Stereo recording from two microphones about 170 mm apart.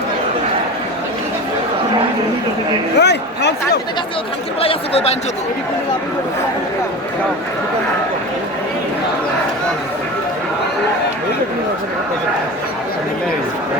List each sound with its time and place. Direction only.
3.0 s a man's voice: 85° left
4.6 s speech: 35° left (ahead or behind)